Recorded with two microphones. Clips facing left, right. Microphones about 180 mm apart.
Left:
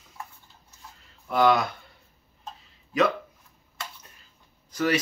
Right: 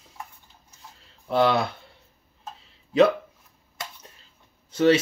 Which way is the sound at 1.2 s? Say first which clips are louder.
Even; 30° right (ahead or behind).